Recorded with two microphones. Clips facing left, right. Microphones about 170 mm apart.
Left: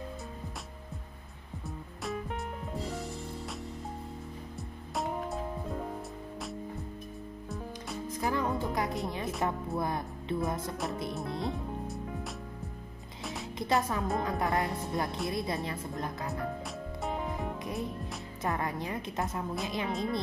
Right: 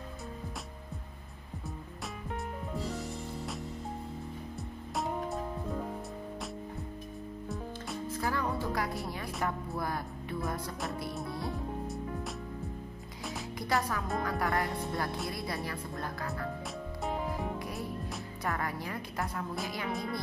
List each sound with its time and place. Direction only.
7.4 s music: centre (ahead or behind)
8.1 s music: 20° left (ahead or behind)
9.8 s speech: 20° left (ahead or behind)
13.6 s speech: 25° left (ahead or behind)
17.0 s music: centre (ahead or behind)
18.4 s speech: 20° left (ahead or behind)